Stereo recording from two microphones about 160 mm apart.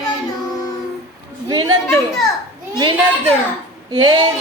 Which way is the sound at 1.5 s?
25° right (ahead or behind).